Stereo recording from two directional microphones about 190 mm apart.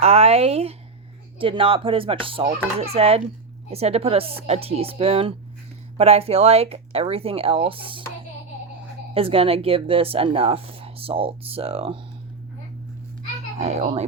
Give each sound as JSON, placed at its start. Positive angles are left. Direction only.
{"t": 0.0, "sound": "a woman's voice", "side_deg": -30}
{"t": 9.1, "sound": "a woman's voice", "side_deg": -30}
{"t": 13.6, "sound": "speech", "side_deg": -35}